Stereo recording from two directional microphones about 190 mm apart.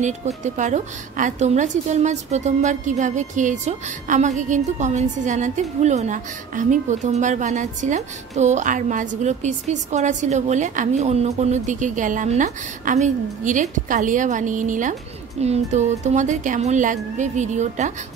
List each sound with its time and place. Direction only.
0.4 s a woman's voice: 40° right (ahead or behind)